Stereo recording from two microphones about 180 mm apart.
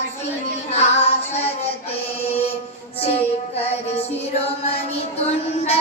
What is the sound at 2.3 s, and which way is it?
Chant, 35° left (ahead or behind).